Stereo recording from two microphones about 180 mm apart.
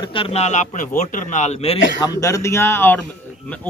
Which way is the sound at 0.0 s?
30° left (ahead or behind).